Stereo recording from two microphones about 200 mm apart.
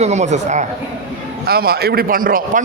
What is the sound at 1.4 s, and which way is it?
A man's voice, 50° right (ahead or behind).